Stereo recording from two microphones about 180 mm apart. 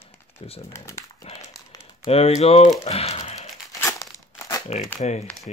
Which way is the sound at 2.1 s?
35° left (ahead or behind).